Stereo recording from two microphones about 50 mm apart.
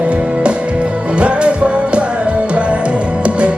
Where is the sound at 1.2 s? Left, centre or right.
Right.